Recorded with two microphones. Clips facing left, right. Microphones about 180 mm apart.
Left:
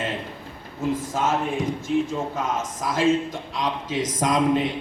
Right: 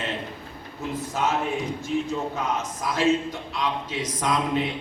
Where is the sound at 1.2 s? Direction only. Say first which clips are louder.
Even; 45° left (ahead or behind).